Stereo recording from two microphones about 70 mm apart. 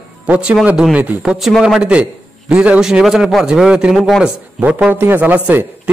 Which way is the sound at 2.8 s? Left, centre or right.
Centre.